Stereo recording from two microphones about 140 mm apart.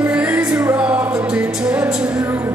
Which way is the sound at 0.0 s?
10° right (ahead or behind).